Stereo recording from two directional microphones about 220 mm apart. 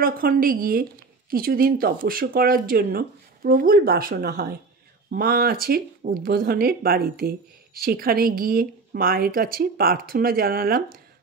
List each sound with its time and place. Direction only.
0.0 s speech: 40° right (ahead or behind)